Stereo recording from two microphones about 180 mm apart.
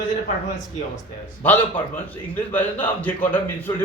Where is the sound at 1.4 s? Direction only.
10° left (ahead or behind).